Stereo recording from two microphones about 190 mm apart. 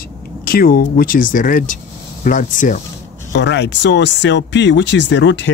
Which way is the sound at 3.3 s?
65° left (ahead or behind).